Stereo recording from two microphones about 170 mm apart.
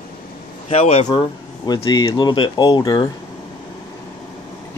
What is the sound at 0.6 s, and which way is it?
Speech, 40° left (ahead or behind).